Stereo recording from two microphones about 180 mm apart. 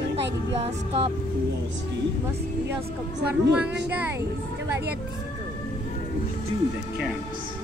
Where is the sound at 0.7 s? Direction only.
30° right (ahead or behind).